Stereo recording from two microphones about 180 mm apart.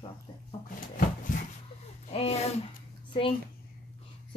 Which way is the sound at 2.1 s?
35° left (ahead or behind).